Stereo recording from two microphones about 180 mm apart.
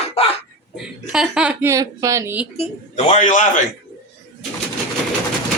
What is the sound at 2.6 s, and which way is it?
Speech, 40° left (ahead or behind).